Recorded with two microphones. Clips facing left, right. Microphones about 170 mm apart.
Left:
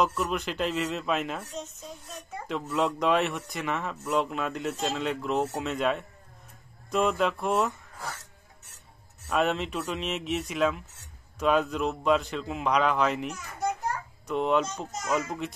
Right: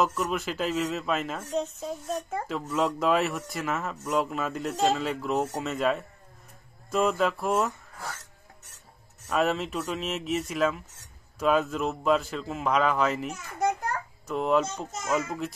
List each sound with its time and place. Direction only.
0.0 s speech: centre (ahead or behind)
9.3 s speech: centre (ahead or behind)
13.6 s children playing: 65° right (ahead or behind)
14.2 s speech: centre (ahead or behind)